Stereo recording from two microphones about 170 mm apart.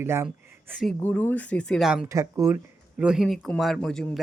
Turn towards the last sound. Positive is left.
turn(degrees=5)  # may be behind; listen again after turning